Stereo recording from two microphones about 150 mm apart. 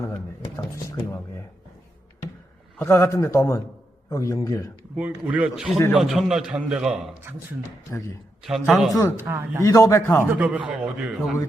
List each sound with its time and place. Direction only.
0.5 s a sound: 20° left (ahead or behind)
2.7 s a man's voice: 15° left (ahead or behind)
4.9 s a man's voice: 10° right (ahead or behind)
7.9 s speech: 20° left (ahead or behind)
8.4 s a man's voice: centre (ahead or behind)
9.1 s a man's voice: 15° right (ahead or behind)
9.6 s a man's voice: 20° left (ahead or behind)
10.2 s a man's voice: 10° right (ahead or behind)